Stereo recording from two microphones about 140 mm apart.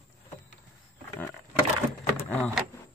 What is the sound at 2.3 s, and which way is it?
Vehicle, centre (ahead or behind).